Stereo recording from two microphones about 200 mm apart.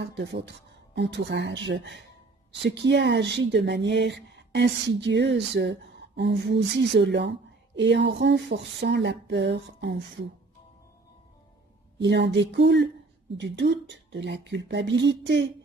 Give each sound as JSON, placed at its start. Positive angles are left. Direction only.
{"t": 0.0, "sound": "speech", "side_deg": -60}
{"t": 12.0, "sound": "speech", "side_deg": -60}